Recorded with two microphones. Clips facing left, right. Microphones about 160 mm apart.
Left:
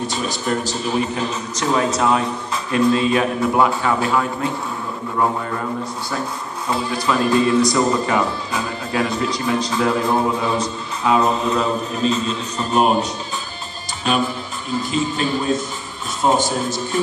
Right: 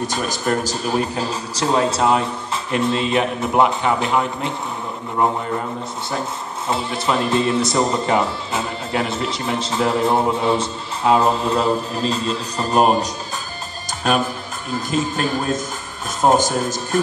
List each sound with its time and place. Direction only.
0.0 s speech: 45° right (ahead or behind); by 4.5 s 20° right (ahead or behind)
6.7 s speech: 25° right (ahead or behind)
14.7 s a man's voice: 50° right (ahead or behind)